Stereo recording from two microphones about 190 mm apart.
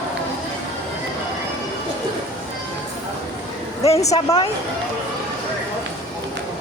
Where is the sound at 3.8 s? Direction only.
35° left (ahead or behind).